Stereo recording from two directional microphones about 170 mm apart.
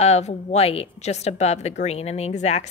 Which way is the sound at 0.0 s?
40° left (ahead or behind).